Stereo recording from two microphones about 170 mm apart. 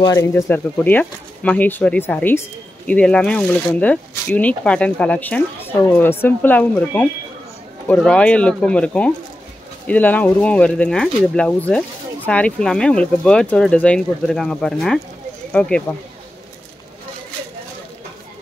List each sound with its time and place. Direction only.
0.0 s speech: 20° left (ahead or behind)